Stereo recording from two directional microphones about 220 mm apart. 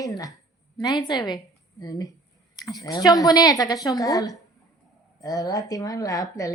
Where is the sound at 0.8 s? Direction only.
20° left (ahead or behind).